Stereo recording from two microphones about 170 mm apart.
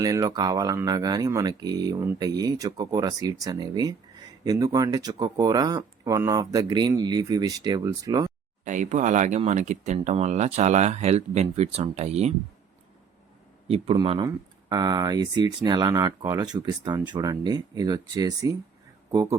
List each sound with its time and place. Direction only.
0.0 s speech: 20° right (ahead or behind)
8.6 s speech: 50° right (ahead or behind)
13.7 s speech: 35° right (ahead or behind); by 19.4 s 20° right (ahead or behind)